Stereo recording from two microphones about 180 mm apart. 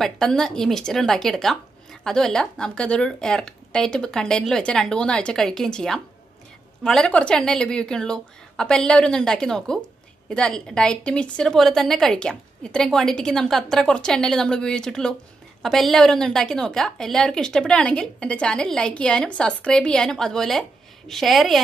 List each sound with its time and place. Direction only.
0.0 s a woman's voice: 5° left (ahead or behind)